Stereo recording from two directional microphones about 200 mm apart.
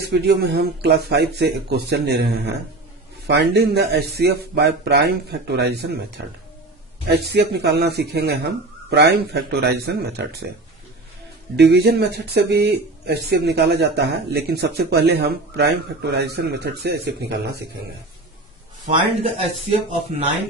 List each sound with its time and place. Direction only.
0.2 s speech: 55° right (ahead or behind)
7.2 s speech: 55° right (ahead or behind)
11.5 s speech: 55° right (ahead or behind)
19.2 s speech: 30° right (ahead or behind)